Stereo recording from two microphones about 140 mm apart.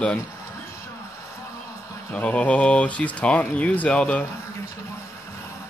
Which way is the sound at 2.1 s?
10° left (ahead or behind).